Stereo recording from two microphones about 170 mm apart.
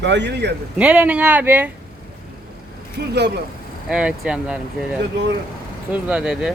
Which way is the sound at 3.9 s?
5° right (ahead or behind).